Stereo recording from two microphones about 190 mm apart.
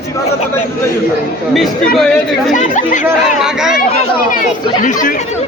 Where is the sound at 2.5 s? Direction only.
40° left (ahead or behind).